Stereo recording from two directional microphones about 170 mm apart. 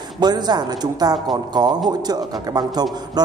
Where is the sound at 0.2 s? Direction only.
25° right (ahead or behind).